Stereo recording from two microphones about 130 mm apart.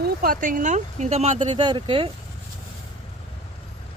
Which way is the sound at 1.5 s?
35° right (ahead or behind).